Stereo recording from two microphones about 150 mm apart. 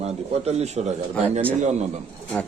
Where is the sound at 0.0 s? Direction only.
45° right (ahead or behind).